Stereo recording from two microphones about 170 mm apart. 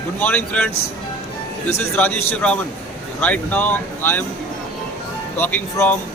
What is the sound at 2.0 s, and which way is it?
A man's voice, 10° left (ahead or behind).